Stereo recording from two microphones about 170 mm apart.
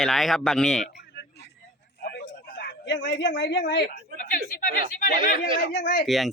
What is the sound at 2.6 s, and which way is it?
Speech, 75° left (ahead or behind).